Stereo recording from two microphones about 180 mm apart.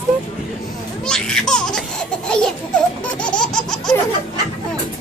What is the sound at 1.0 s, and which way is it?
Baby laughter, 5° left (ahead or behind).